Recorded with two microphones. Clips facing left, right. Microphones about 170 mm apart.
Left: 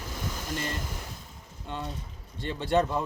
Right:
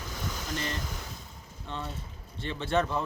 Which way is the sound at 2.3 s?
15° left (ahead or behind).